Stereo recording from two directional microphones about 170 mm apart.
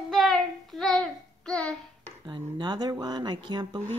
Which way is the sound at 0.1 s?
Centre (ahead or behind).